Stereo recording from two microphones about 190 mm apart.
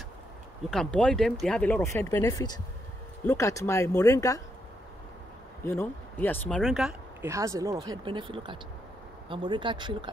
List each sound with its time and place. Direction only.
0.7 s speech: 5° left (ahead or behind)
5.6 s speech: 15° left (ahead or behind); by 7.2 s centre (ahead or behind)
7.2 s speech: 15° right (ahead or behind)